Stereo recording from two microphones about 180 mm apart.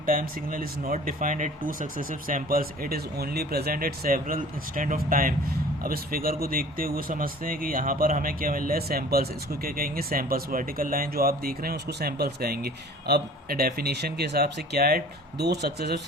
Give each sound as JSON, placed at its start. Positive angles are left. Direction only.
{"t": 0.0, "sound": "speech", "side_deg": -50}